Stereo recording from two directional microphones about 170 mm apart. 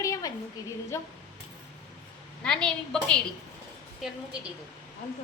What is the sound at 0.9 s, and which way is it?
Speech, 20° left (ahead or behind).